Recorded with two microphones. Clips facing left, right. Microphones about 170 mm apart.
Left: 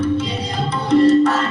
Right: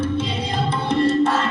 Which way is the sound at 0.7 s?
25° right (ahead or behind).